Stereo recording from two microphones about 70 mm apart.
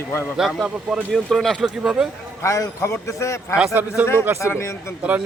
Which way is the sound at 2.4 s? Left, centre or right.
Left.